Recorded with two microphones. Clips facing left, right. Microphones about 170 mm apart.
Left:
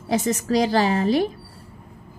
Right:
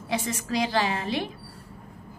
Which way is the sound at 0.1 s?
40° left (ahead or behind).